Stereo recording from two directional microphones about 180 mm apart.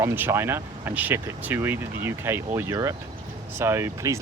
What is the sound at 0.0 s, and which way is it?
Speech, 15° right (ahead or behind).